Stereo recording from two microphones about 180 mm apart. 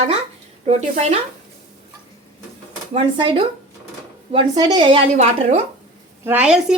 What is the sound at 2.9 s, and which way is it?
A woman's voice, 25° right (ahead or behind).